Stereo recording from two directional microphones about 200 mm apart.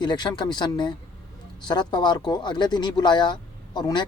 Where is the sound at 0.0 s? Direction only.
20° left (ahead or behind).